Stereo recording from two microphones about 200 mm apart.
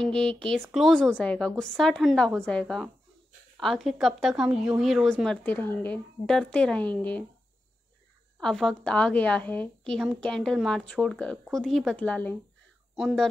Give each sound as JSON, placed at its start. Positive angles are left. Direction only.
{"t": 0.0, "sound": "speech", "side_deg": 5}
{"t": 8.4, "sound": "speech", "side_deg": 0}